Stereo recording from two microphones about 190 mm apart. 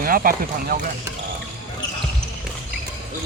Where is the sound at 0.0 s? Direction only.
50° right (ahead or behind).